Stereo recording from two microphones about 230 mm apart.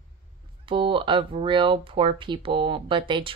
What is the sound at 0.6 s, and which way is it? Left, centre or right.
Speech, right.